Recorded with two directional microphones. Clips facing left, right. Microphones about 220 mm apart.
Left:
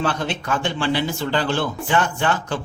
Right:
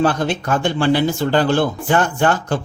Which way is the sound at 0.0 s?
45° right (ahead or behind).